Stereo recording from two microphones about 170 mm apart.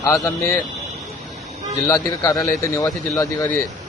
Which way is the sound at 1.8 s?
20° left (ahead or behind).